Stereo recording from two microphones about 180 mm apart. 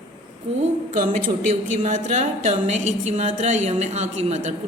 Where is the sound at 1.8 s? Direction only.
45° right (ahead or behind).